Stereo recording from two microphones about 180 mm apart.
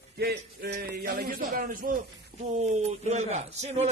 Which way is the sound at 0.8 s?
60° right (ahead or behind).